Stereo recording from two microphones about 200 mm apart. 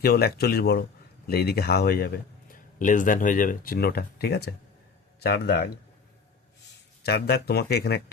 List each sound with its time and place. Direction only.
0.0 s a man's voice: 50° left (ahead or behind)
7.0 s a man's voice: 55° left (ahead or behind)